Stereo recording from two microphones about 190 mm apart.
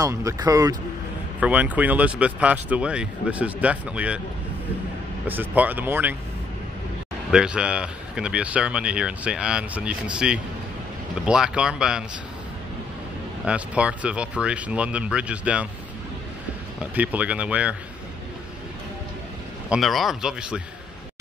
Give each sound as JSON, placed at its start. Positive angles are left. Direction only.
{"t": 0.0, "sound": "speech", "side_deg": -15}
{"t": 1.4, "sound": "speech", "side_deg": -10}
{"t": 5.2, "sound": "speech", "side_deg": -10}
{"t": 7.2, "sound": "speech", "side_deg": -5}
{"t": 13.5, "sound": "speech", "side_deg": -5}
{"t": 16.9, "sound": "speech", "side_deg": -10}
{"t": 19.7, "sound": "speech", "side_deg": 0}